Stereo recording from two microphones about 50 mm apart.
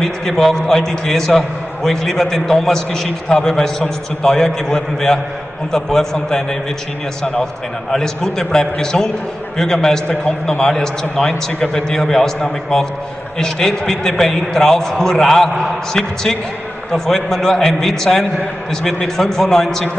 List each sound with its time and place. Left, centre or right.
0.0 s a man's voice: centre
7.9 s a man's voice: centre